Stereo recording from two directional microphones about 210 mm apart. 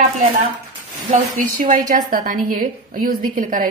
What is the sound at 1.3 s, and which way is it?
A woman's voice, 35° right (ahead or behind).